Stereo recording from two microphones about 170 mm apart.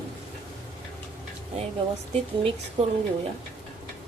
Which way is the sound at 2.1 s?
35° right (ahead or behind).